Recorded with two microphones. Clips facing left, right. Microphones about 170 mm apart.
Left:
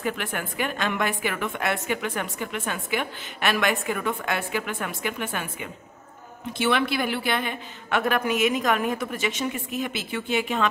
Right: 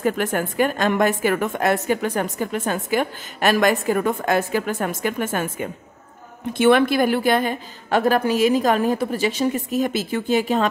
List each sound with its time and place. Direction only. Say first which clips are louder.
0.0 s a woman's voice: right 8 dB; 40° right (ahead or behind)